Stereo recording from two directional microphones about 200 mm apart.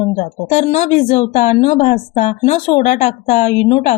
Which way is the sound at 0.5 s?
35° left (ahead or behind).